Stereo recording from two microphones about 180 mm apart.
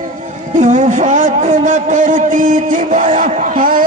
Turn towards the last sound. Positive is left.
turn(degrees=-50)  # may be behind; listen again after turning